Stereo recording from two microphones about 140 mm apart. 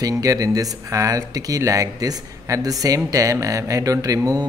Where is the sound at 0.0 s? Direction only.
25° right (ahead or behind).